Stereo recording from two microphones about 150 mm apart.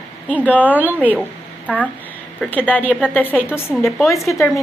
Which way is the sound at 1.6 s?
10° left (ahead or behind).